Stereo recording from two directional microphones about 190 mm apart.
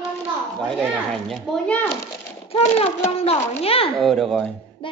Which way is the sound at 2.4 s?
30° left (ahead or behind).